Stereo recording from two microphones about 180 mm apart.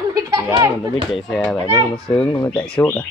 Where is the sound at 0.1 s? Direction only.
20° right (ahead or behind).